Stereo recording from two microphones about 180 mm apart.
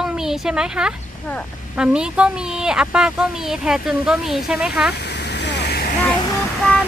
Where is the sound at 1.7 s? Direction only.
5° right (ahead or behind).